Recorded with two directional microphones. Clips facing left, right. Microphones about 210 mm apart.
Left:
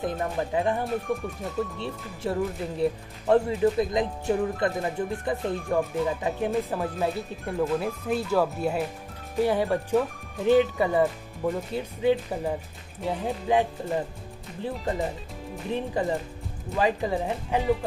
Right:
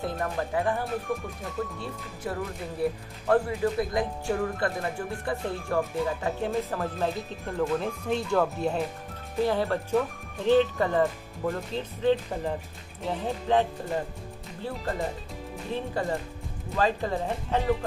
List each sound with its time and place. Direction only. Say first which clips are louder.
0.0 s speech: left 2 dB; 20° left (ahead or behind)
15.7 s speech: left 3 dB; 15° left (ahead or behind)